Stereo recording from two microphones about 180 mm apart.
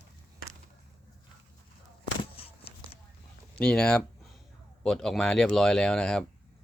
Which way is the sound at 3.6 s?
5° left (ahead or behind).